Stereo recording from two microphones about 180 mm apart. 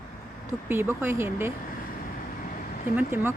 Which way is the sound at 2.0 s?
50° left (ahead or behind).